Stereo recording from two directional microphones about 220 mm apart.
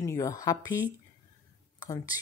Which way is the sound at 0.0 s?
15° left (ahead or behind).